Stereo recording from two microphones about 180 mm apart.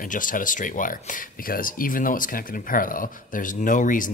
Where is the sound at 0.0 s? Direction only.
50° left (ahead or behind).